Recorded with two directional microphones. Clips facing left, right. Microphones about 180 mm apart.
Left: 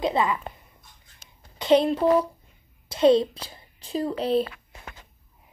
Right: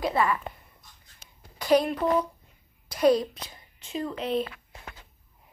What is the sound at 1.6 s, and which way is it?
A child's voice, 25° left (ahead or behind).